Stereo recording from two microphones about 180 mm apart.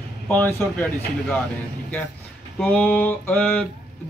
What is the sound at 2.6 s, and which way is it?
Speech, 10° left (ahead or behind).